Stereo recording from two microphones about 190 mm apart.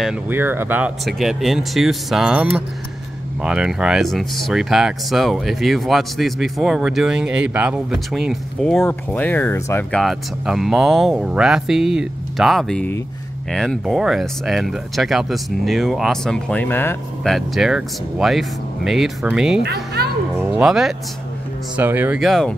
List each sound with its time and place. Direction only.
0.3 s speech: 10° right (ahead or behind)
19.6 s a child's voice: 60° right (ahead or behind)
20.3 s speech: 10° right (ahead or behind)